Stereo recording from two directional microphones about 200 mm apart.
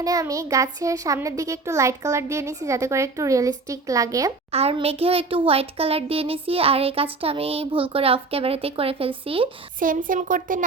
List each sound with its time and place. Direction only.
0.0 s a child's voice: 15° right (ahead or behind)
4.5 s a child's voice: 30° right (ahead or behind)
9.8 s speech: 40° right (ahead or behind)